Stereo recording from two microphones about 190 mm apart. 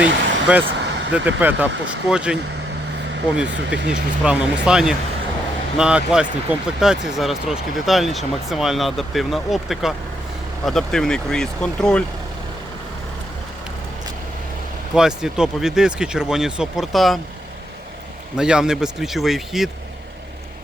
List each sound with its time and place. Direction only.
0.0 s vehicle: 5° right (ahead or behind)
1.1 s speech: 10° right (ahead or behind)
3.8 s speech: 65° right (ahead or behind)
4.2 s speech: 5° right (ahead or behind)
14.9 s speech: 5° right (ahead or behind)
18.3 s speech: 5° right (ahead or behind)